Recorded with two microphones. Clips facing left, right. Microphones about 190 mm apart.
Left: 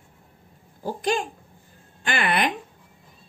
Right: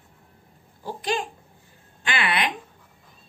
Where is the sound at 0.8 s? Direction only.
45° left (ahead or behind).